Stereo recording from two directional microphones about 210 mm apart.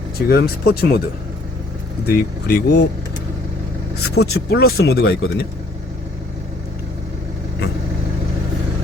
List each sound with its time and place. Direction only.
0.3 s speech: 45° left (ahead or behind)
2.0 s speech: 50° left (ahead or behind)
3.9 s speech: 50° left (ahead or behind)